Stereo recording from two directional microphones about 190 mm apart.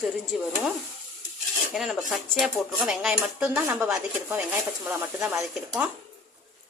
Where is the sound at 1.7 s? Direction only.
Centre (ahead or behind).